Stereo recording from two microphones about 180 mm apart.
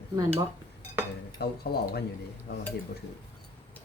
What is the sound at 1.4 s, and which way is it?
Speech, 60° left (ahead or behind).